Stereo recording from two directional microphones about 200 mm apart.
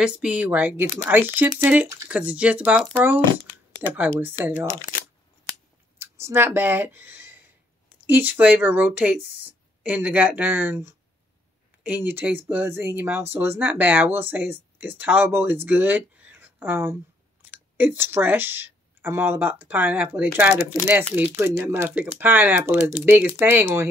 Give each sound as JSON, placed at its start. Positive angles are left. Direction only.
{"t": 0.0, "sound": "speech", "side_deg": -5}
{"t": 4.5, "sound": "speech", "side_deg": -10}
{"t": 5.9, "sound": "speech", "side_deg": -15}